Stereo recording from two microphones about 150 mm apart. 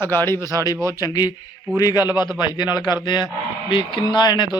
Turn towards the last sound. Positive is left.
turn(degrees=30)  # may be behind; listen again after turning